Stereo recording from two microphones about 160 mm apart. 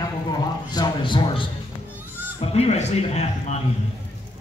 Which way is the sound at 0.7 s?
25° left (ahead or behind).